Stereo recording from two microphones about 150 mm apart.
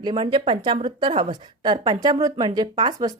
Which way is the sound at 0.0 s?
35° right (ahead or behind).